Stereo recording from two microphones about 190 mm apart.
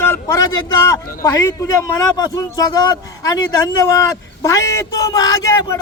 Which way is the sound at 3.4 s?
15° left (ahead or behind).